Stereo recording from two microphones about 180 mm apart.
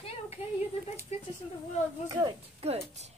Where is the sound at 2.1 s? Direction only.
25° right (ahead or behind).